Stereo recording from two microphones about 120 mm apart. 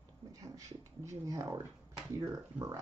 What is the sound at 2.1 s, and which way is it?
Speech, 25° right (ahead or behind).